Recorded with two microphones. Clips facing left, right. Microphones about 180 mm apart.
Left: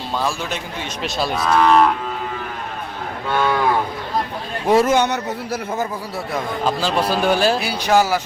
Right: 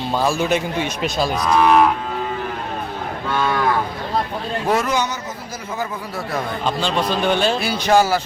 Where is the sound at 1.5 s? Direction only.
10° right (ahead or behind).